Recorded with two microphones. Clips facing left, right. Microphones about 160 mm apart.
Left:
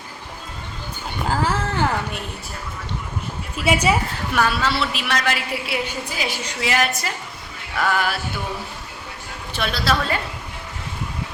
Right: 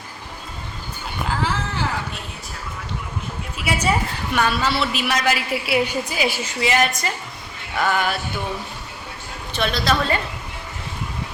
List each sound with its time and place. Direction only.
1.3 s a sound: 50° left (ahead or behind)
3.7 s a woman's voice: 25° left (ahead or behind)
4.4 s a woman's voice: centre (ahead or behind)
9.5 s a woman's voice: 5° left (ahead or behind)